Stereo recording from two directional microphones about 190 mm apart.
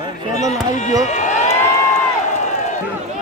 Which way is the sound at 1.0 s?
40° left (ahead or behind).